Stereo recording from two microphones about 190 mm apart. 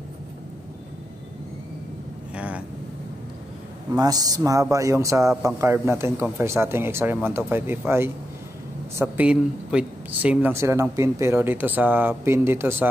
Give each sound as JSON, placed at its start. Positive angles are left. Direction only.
{"t": 2.3, "sound": "vehicle", "side_deg": -5}
{"t": 3.9, "sound": "speech", "side_deg": -20}